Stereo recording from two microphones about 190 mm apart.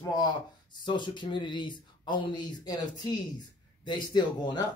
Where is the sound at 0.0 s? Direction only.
20° left (ahead or behind).